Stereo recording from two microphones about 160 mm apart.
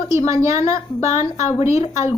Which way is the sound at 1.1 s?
45° left (ahead or behind).